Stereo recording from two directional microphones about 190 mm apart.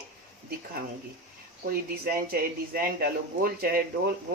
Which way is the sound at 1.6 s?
50° right (ahead or behind).